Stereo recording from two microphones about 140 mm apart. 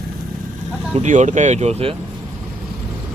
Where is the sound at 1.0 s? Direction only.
60° right (ahead or behind).